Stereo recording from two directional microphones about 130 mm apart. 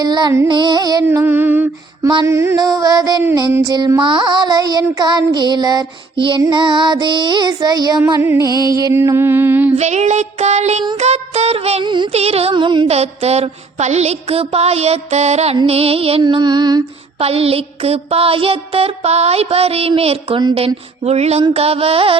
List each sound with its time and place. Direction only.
0.0 s child singing: 35° right (ahead or behind)
1.0 s music: 15° right (ahead or behind)
3.5 s child singing: 30° right (ahead or behind)
8.2 s music: 20° right (ahead or behind)
9.7 s music: 60° right (ahead or behind)
11.9 s child singing: 35° right (ahead or behind)
12.1 s music: 55° right (ahead or behind)
12.9 s music: 55° right (ahead or behind)
16.2 s child singing: 35° right (ahead or behind)
17.2 s music: 50° right (ahead or behind)